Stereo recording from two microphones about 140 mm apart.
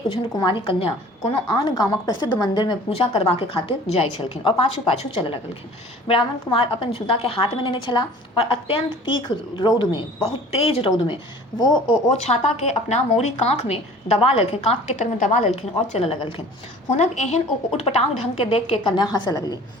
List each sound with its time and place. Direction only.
0.3 s a woman's voice: 35° left (ahead or behind)
3.1 s a woman's voice: 45° left (ahead or behind)
10.5 s a woman's voice: 45° left (ahead or behind)
12.2 s a woman's voice: 50° left (ahead or behind); by 19.5 s 25° left (ahead or behind)